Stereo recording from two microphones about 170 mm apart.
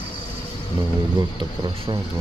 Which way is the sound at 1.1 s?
25° right (ahead or behind).